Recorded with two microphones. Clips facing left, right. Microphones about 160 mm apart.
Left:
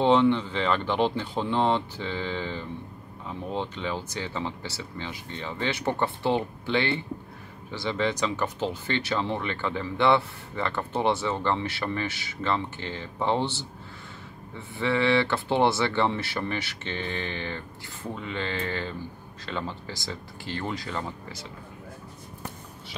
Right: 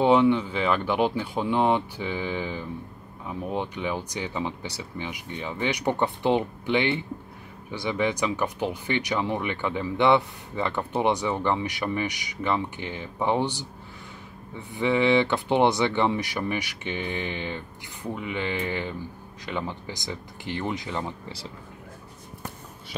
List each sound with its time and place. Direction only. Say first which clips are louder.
0.0 s speech: right 1 dB; 10° right (ahead or behind)
14.7 s speech: right 2 dB; 15° right (ahead or behind)